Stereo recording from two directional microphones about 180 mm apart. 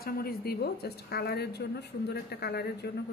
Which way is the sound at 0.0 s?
55° left (ahead or behind).